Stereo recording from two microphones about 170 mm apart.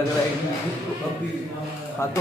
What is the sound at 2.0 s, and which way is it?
Speech, 15° left (ahead or behind).